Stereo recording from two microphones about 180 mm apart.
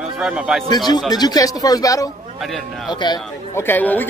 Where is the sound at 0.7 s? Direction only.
25° left (ahead or behind).